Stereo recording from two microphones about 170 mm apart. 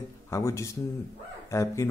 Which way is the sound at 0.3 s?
15° left (ahead or behind).